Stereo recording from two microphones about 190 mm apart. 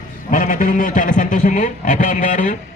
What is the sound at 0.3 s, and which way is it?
A man's voice, 45° left (ahead or behind).